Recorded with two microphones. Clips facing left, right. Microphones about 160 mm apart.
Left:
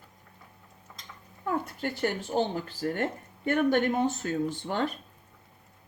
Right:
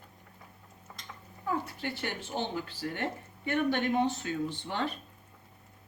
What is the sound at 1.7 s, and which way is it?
Speech, 45° left (ahead or behind).